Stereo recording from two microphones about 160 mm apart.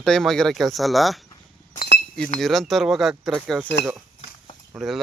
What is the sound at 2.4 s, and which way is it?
Speech, centre (ahead or behind).